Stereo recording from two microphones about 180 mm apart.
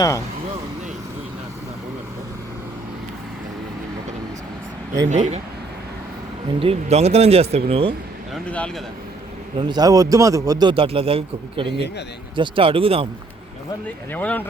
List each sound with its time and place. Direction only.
5.0 s speech: 40° right (ahead or behind)
6.6 s speech: 35° right (ahead or behind)
8.3 s speech: 5° left (ahead or behind)
9.6 s a man's voice: 25° right (ahead or behind)
14.1 s speech: 10° left (ahead or behind)